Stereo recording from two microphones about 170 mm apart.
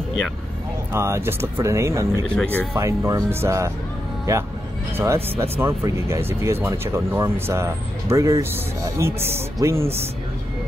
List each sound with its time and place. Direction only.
0.9 s speech: 15° right (ahead or behind)
2.2 s speech: 5° left (ahead or behind)
2.7 s speech: 15° right (ahead or behind)
4.9 s speech: 15° right (ahead or behind)